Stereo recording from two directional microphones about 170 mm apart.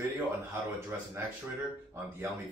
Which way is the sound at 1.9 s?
15° right (ahead or behind).